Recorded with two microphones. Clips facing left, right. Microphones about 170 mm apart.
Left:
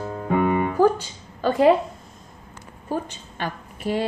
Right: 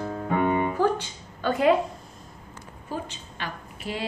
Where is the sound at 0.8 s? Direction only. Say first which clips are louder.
Left 5 dB; 40° left (ahead or behind).